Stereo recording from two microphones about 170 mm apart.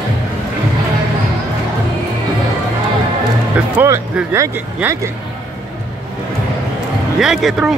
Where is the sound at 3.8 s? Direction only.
15° right (ahead or behind).